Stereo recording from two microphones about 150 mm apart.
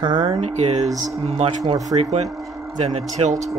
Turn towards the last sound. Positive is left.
turn(degrees=-50)  # may be behind; listen again after turning